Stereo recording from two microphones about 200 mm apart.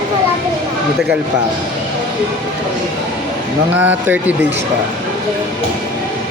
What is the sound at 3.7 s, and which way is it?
Speech, 10° right (ahead or behind).